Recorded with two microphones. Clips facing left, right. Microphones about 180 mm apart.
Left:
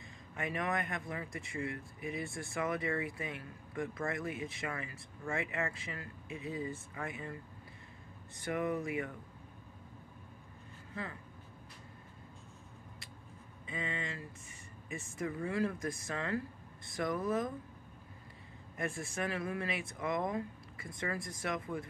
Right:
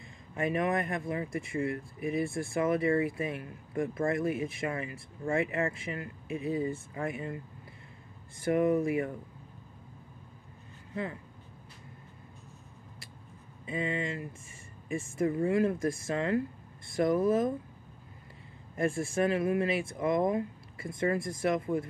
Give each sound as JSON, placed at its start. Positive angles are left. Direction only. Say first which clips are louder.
{"t": 0.4, "sound": "speech", "louder": "right 7 dB", "side_deg": -25}
{"t": 1.7, "sound": "speech", "louder": "right 7 dB", "side_deg": 20}
{"t": 2.1, "sound": "speech", "louder": "right 9 dB", "side_deg": -25}
{"t": 8.5, "sound": "speech", "louder": "right 9 dB", "side_deg": -25}
{"t": 13.7, "sound": "speech", "louder": "right 8 dB", "side_deg": -25}
{"t": 18.8, "sound": "speech", "louder": "right 9 dB", "side_deg": -25}